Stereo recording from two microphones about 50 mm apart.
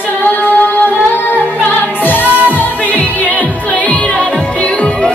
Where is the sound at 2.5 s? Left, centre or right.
Left.